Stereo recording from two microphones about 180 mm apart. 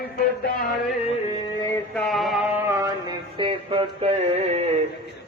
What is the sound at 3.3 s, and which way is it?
Music, 30° right (ahead or behind).